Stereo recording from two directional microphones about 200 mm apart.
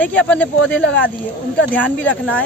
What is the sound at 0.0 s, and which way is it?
Speech, 5° left (ahead or behind).